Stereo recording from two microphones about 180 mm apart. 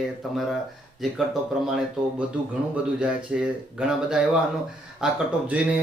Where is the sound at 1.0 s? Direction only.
Centre (ahead or behind).